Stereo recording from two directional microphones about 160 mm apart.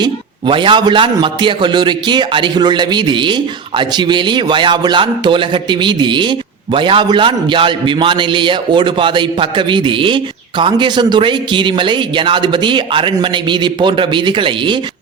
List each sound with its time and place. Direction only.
0.0 s a man's voice: 30° right (ahead or behind)